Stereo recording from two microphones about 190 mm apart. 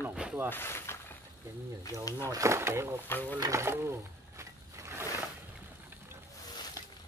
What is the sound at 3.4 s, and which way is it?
Speech, 15° right (ahead or behind).